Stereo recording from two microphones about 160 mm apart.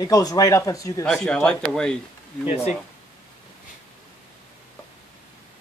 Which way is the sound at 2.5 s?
40° left (ahead or behind).